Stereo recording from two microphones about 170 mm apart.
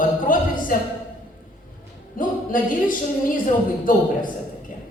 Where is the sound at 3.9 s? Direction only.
55° left (ahead or behind).